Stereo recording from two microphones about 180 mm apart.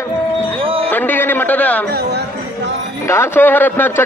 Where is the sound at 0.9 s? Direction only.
10° left (ahead or behind).